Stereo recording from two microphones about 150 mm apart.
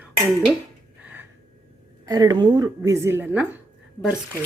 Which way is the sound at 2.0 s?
25° right (ahead or behind).